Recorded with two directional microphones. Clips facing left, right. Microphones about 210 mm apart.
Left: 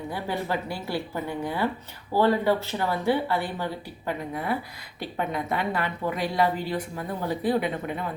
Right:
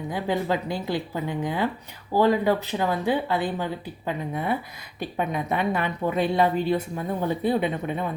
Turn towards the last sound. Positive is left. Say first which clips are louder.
# right 1 dB
turn(degrees=-25)  # may be behind; listen again after turning